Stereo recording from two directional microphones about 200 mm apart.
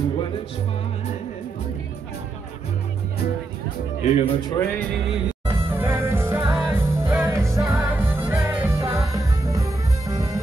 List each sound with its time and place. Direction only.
4.0 s speech: 30° left (ahead or behind)
4.6 s music: 5° left (ahead or behind)
5.5 s music: 10° right (ahead or behind)